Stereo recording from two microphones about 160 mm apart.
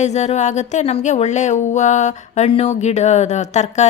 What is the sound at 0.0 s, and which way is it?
Speech, 45° left (ahead or behind).